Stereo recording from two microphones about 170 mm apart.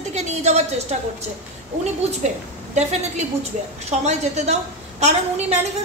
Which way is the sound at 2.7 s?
40° right (ahead or behind).